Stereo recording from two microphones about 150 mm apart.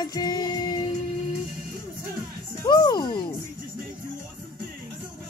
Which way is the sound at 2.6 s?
30° left (ahead or behind).